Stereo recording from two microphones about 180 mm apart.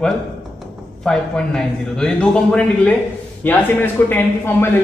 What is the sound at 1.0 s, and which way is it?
A man's voice, 5° left (ahead or behind).